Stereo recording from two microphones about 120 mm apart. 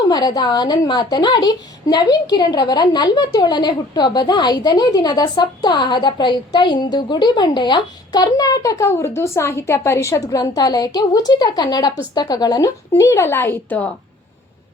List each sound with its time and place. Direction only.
0.1 s a woman's voice: 35° left (ahead or behind); by 13.9 s 15° left (ahead or behind)